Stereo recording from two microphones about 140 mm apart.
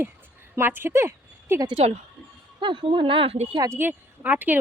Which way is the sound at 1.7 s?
45° right (ahead or behind).